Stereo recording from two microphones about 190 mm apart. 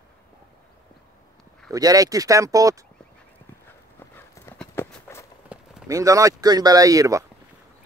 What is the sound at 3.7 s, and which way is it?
Clip-clop, 10° left (ahead or behind).